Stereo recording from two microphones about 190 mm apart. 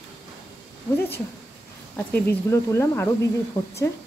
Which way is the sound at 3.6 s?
25° left (ahead or behind).